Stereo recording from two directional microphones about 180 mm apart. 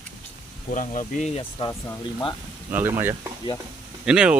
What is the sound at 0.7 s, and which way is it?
Speech, 45° left (ahead or behind).